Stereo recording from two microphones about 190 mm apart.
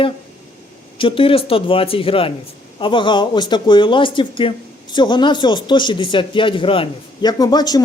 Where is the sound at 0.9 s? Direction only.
30° left (ahead or behind).